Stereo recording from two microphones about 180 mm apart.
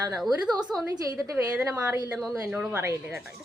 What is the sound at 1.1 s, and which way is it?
Speech, 20° right (ahead or behind).